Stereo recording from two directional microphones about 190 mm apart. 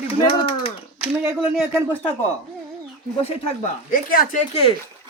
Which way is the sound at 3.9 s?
45° left (ahead or behind).